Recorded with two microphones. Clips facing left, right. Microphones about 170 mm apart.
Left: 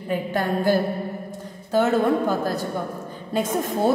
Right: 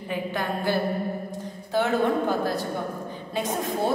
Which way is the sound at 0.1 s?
40° left (ahead or behind).